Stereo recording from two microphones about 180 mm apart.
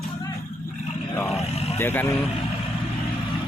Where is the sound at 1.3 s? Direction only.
35° left (ahead or behind).